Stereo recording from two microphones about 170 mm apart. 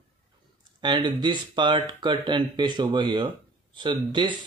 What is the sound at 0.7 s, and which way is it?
Speech, 25° right (ahead or behind).